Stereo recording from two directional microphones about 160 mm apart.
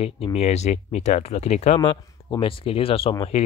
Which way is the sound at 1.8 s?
30° left (ahead or behind).